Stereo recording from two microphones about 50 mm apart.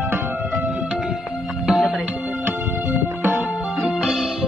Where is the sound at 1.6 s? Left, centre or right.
Centre.